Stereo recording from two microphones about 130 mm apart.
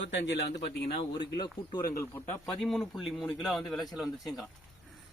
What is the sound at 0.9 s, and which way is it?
Speech, 45° left (ahead or behind).